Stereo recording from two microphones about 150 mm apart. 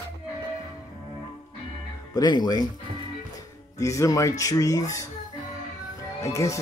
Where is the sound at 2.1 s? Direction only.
30° left (ahead or behind).